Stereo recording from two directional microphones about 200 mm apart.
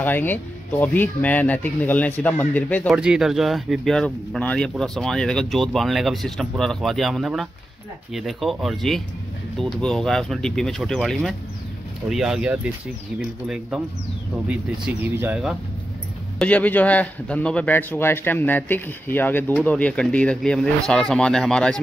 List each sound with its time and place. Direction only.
0.0 s a man's voice: 10° left (ahead or behind)
3.0 s speech: 5° right (ahead or behind)
15.1 s speech: 5° right (ahead or behind)
16.3 s a man's voice: 5° left (ahead or behind)